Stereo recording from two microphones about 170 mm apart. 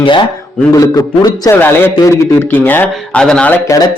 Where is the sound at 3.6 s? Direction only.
20° left (ahead or behind).